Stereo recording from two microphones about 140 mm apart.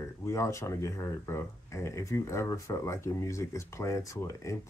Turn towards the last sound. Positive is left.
turn(degrees=20)  # may be behind; listen again after turning